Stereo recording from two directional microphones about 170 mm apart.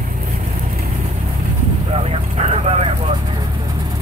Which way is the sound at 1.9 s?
35° right (ahead or behind).